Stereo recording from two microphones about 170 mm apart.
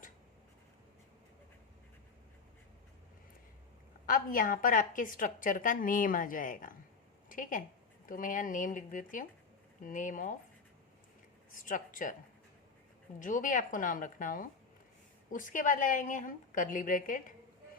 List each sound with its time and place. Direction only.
4.0 s a woman's voice: 55° left (ahead or behind)
11.5 s a woman's voice: 50° left (ahead or behind)
13.1 s a woman's voice: 50° left (ahead or behind)